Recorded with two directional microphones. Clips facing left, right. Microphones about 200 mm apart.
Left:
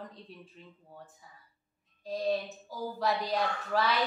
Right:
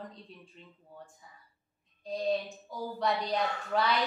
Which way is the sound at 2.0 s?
Centre (ahead or behind).